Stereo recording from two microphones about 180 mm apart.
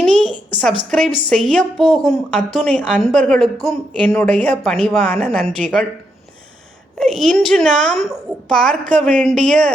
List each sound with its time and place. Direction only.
0.0 s a woman's voice: 5° left (ahead or behind)
7.0 s a woman's voice: centre (ahead or behind)